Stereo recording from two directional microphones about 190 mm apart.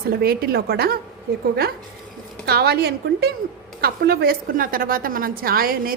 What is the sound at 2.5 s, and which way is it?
A woman's voice, 55° right (ahead or behind).